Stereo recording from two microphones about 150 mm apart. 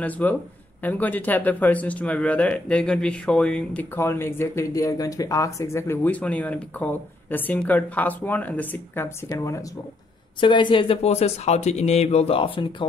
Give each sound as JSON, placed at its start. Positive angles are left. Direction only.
{"t": 0.0, "sound": "speech", "side_deg": 10}
{"t": 10.4, "sound": "speech", "side_deg": 35}